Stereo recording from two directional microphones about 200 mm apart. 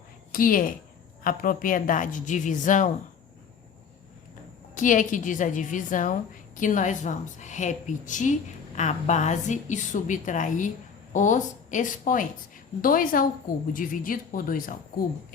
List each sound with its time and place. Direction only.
0.3 s a woman's voice: 45° left (ahead or behind)
4.7 s a woman's voice: 40° left (ahead or behind)